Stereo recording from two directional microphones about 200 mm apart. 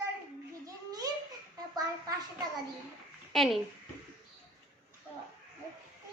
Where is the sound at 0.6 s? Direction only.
20° right (ahead or behind).